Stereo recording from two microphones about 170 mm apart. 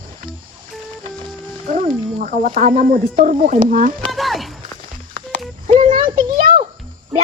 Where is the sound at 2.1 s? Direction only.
50° right (ahead or behind).